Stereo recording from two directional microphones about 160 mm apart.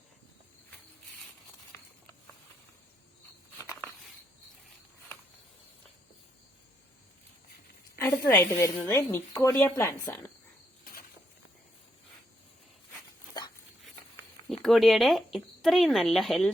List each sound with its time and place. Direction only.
7.9 s speech: 15° left (ahead or behind)
14.5 s speech: centre (ahead or behind)